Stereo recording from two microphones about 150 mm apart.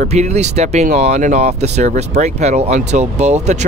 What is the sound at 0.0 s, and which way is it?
Speech, 50° right (ahead or behind).